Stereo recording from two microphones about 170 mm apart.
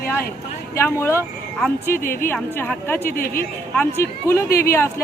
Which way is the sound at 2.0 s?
55° left (ahead or behind).